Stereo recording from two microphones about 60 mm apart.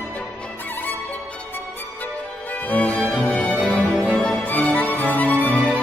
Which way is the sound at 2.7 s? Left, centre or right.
Left.